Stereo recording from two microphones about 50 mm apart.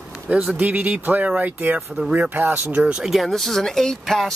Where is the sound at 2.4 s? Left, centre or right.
Right.